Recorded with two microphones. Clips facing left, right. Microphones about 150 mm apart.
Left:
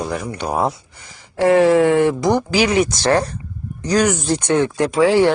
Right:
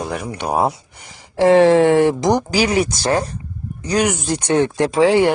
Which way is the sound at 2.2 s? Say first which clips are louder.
Even; 20° right (ahead or behind).